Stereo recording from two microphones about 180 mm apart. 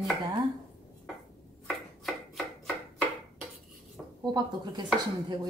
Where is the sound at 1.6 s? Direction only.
Centre (ahead or behind).